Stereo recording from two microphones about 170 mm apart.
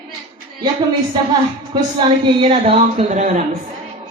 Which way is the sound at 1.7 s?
25° right (ahead or behind).